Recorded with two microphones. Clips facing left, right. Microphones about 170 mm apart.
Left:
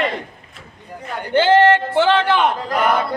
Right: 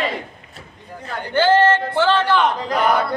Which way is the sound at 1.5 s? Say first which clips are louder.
Left 3 dB; 15° left (ahead or behind).